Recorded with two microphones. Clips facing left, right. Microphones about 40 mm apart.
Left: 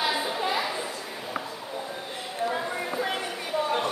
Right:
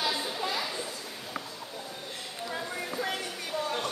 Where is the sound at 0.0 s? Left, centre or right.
Left.